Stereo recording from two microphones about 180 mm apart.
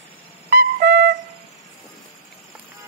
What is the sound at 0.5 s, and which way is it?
Music, 55° right (ahead or behind).